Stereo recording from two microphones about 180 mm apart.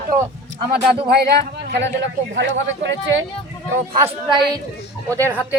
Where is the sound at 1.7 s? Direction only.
85° right.